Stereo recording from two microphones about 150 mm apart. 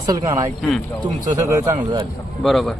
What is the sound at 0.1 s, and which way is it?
Speech, 25° right (ahead or behind).